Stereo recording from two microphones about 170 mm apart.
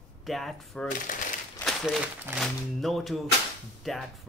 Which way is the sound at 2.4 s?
Centre (ahead or behind).